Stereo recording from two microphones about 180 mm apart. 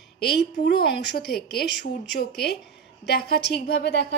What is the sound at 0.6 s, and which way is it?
A woman's voice, 60° left (ahead or behind).